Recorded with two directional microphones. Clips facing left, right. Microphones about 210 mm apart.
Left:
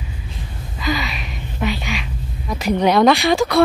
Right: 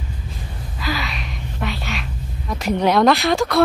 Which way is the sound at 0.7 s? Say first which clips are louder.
Left 3 dB; centre (ahead or behind).